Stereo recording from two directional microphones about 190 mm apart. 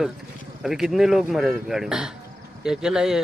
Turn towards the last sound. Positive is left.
turn(degrees=-5)  # may be behind; listen again after turning